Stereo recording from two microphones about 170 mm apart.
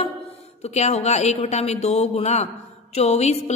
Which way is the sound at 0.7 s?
40° left (ahead or behind).